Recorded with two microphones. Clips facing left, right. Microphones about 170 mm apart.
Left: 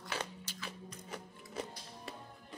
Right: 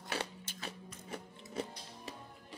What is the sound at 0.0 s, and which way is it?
Music, 55° right (ahead or behind).